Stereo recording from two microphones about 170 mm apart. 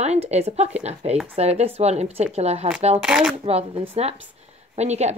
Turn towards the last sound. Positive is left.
turn(degrees=-40)  # may be behind; listen again after turning